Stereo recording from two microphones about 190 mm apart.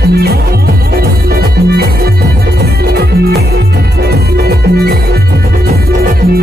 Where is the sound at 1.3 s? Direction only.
55° right (ahead or behind).